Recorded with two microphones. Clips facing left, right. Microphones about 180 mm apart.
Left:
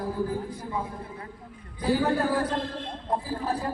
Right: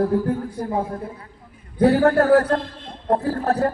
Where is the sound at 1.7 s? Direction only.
75° right (ahead or behind).